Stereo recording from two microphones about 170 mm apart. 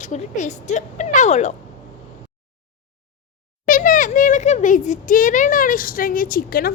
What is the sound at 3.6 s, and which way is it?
A woman's voice, 50° left (ahead or behind).